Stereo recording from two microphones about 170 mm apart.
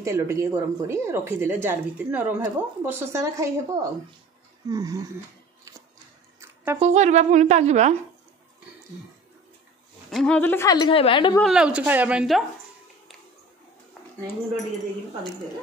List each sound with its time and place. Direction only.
0.0 s speech: 15° right (ahead or behind)
5.7 s a sound: 20° right (ahead or behind)
6.8 s a woman's voice: 40° right (ahead or behind)
10.1 s a woman's voice: 5° left (ahead or behind); by 11.3 s 30° left (ahead or behind)
11.4 s a woman's voice: 5° right (ahead or behind)